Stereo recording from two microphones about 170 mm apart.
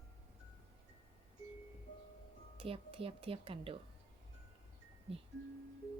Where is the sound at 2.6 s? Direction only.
35° right (ahead or behind).